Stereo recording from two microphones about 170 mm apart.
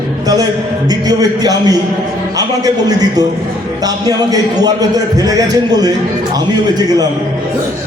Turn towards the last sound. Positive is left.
turn(degrees=-25)  # may be behind; listen again after turning